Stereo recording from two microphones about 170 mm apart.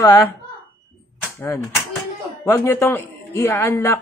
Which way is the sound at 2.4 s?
15° left (ahead or behind).